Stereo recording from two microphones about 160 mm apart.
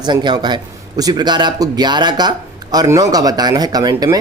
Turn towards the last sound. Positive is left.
turn(degrees=-25)  # may be behind; listen again after turning